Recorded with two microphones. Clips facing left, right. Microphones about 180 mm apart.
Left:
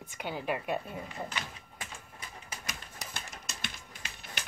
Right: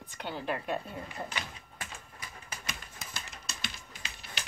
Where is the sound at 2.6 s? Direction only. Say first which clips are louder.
Right 1 dB; 45° left (ahead or behind).